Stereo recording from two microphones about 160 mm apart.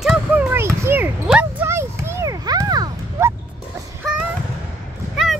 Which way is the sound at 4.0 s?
5° right (ahead or behind).